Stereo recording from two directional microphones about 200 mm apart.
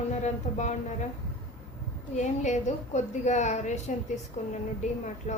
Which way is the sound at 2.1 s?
35° left (ahead or behind).